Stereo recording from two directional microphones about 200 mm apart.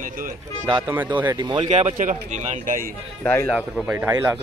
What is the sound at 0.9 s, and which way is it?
Speech, 10° right (ahead or behind).